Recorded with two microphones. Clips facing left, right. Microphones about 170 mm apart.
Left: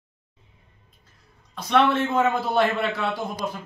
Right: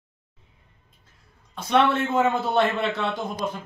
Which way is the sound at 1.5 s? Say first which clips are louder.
Even; centre (ahead or behind).